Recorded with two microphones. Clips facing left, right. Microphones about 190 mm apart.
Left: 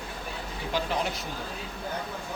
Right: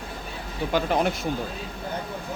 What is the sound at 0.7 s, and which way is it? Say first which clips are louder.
Speech: right 6 dB; 55° right (ahead or behind).